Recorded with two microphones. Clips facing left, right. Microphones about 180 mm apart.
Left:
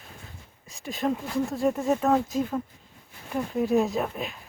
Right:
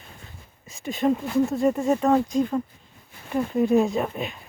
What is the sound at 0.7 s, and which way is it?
Speech, centre (ahead or behind).